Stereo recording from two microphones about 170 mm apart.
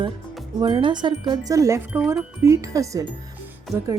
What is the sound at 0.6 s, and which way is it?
Speech, 30° right (ahead or behind).